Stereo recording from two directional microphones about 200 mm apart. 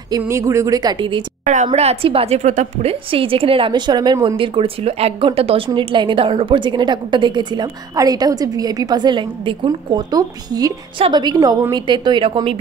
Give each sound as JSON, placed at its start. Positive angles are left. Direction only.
{"t": 0.1, "sound": "a woman's voice", "side_deg": -15}
{"t": 1.4, "sound": "a woman's voice", "side_deg": -40}